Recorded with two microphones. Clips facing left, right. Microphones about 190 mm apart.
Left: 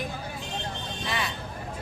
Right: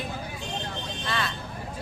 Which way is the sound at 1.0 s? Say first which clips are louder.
Right 1 dB; 15° left (ahead or behind).